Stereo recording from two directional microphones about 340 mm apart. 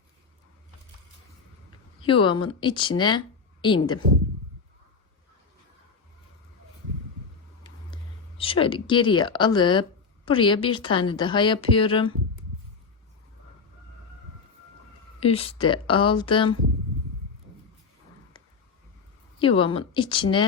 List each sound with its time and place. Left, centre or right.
2.0 s a woman's voice: centre
7.9 s a sound: centre
8.4 s a woman's voice: centre
15.2 s a woman's voice: centre
18.3 s a sound: centre
19.4 s a woman's voice: centre